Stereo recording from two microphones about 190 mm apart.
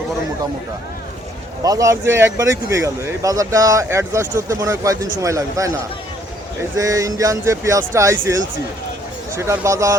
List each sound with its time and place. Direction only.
1.6 s speech: 20° right (ahead or behind)
6.7 s speech: 15° right (ahead or behind)